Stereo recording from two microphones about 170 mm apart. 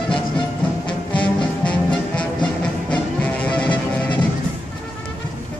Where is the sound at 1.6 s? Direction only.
5° left (ahead or behind).